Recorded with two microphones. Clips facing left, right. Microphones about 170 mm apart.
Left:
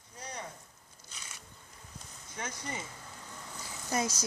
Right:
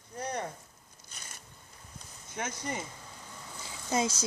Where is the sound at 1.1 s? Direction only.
45° right (ahead or behind).